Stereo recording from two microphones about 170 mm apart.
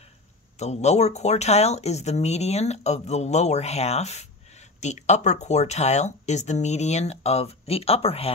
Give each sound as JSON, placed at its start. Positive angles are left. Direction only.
{"t": 0.6, "sound": "speech", "side_deg": 40}